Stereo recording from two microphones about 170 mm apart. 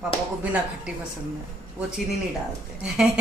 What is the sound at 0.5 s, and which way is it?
Speech, 5° right (ahead or behind).